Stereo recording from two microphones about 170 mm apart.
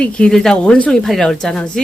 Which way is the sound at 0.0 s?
5° left (ahead or behind).